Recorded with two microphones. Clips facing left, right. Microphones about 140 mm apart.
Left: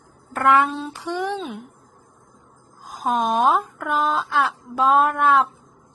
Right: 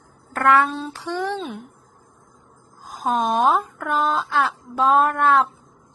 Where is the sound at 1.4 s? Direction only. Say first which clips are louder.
Even; centre (ahead or behind).